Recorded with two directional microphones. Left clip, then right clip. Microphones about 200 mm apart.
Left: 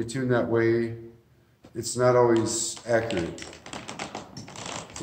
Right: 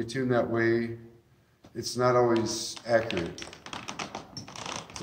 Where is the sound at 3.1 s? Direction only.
35° right (ahead or behind).